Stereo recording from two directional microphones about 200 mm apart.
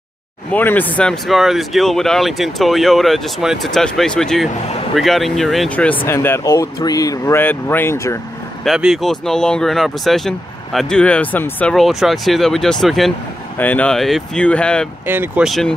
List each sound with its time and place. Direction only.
0.5 s speech: 10° left (ahead or behind)
8.6 s speech: centre (ahead or behind)
15.0 s speech: 10° right (ahead or behind)